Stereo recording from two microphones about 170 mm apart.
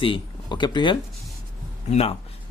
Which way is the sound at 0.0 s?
30° left (ahead or behind).